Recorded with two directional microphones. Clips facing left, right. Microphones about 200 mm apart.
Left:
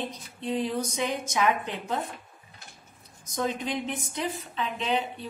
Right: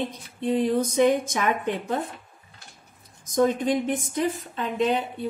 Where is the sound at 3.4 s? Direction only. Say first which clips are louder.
Right 6 dB; 50° right (ahead or behind).